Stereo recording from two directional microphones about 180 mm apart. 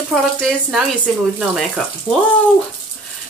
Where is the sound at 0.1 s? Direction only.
Centre (ahead or behind).